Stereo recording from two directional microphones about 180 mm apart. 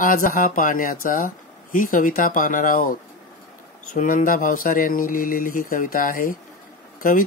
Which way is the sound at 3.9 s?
50° left (ahead or behind).